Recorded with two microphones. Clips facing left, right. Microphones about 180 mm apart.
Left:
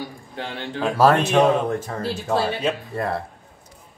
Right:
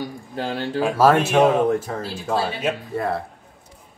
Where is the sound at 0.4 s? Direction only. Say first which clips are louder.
Right 5 dB; 35° right (ahead or behind).